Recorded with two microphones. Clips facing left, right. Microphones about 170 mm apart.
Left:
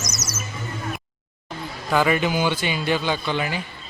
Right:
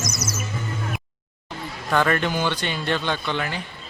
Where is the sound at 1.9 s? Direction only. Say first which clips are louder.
Left 1 dB; 5° left (ahead or behind).